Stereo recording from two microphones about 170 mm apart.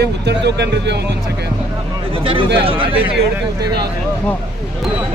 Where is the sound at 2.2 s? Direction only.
30° right (ahead or behind).